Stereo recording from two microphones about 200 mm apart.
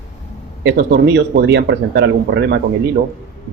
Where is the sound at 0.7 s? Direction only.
60° right (ahead or behind).